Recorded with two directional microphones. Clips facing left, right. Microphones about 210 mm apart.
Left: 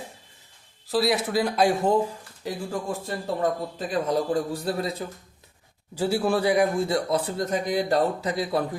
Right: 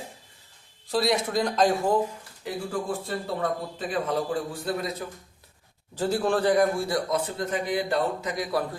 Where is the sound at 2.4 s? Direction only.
45° left (ahead or behind).